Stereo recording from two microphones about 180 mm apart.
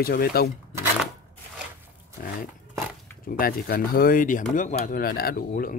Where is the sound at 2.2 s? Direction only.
50° left (ahead or behind).